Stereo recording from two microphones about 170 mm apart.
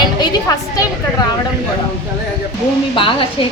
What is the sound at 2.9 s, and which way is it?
Speech, 30° left (ahead or behind).